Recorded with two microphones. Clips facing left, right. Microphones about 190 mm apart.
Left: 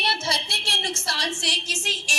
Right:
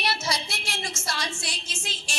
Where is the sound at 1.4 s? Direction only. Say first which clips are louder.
Left 5 dB; 40° left (ahead or behind).